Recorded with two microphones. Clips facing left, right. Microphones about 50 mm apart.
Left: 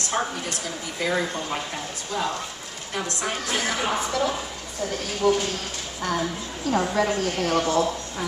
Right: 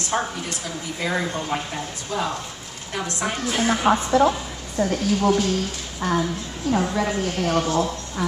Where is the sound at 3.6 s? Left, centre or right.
Right.